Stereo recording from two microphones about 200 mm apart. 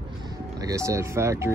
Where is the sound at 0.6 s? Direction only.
15° right (ahead or behind).